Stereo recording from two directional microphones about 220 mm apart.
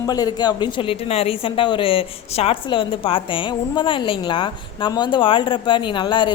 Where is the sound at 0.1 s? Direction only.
15° left (ahead or behind).